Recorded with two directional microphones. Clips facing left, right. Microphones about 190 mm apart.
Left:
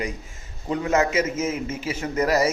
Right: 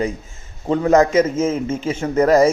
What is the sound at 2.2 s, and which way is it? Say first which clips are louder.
Speech: right 8 dB; 50° right (ahead or behind).